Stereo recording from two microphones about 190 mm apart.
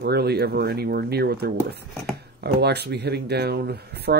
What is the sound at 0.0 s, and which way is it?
Speech, 55° right (ahead or behind).